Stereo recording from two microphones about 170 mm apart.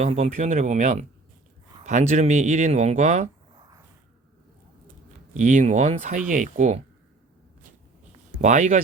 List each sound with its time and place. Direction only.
0.0 s speech: 40° right (ahead or behind)
3.5 s a sound: 25° right (ahead or behind)
5.3 s speech: 45° right (ahead or behind)
8.4 s speech: 45° right (ahead or behind)